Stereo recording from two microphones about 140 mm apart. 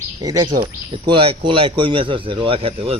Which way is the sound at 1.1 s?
40° right (ahead or behind).